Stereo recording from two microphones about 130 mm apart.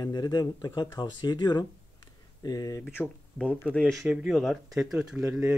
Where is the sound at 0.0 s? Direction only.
30° left (ahead or behind).